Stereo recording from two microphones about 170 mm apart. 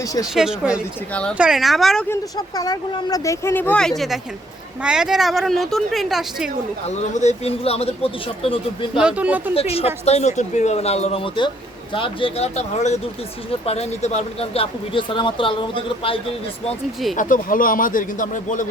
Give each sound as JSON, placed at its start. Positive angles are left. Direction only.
{"t": 0.3, "sound": "speech", "side_deg": -5}
{"t": 2.6, "sound": "speech", "side_deg": 20}
{"t": 6.8, "sound": "speech", "side_deg": 40}
{"t": 9.0, "sound": "speech", "side_deg": -5}
{"t": 9.6, "sound": "speech", "side_deg": 35}
{"t": 17.2, "sound": "speech", "side_deg": 55}